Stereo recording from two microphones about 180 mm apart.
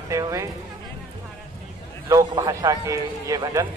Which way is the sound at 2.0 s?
20° right (ahead or behind).